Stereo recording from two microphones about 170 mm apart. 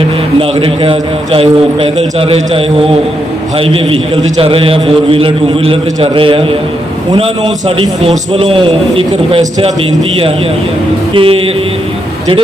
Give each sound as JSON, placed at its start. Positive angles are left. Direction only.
{"t": 0.3, "sound": "a man's voice", "side_deg": -30}
{"t": 11.1, "sound": "a man's voice", "side_deg": -30}